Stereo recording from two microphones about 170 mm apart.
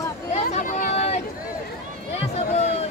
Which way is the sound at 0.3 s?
40° left (ahead or behind).